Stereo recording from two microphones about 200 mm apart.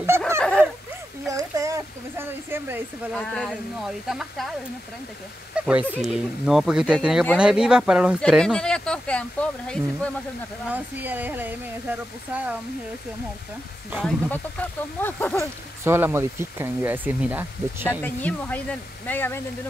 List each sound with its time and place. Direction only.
0.4 s a sound: 5° left (ahead or behind)
1.3 s a sound: 15° right (ahead or behind)
3.1 s speech: 5° left (ahead or behind)
10.7 s speech: 10° right (ahead or behind)
13.9 s speech: 5° left (ahead or behind)
15.8 s speech: 10° right (ahead or behind)
17.8 s speech: 10° left (ahead or behind)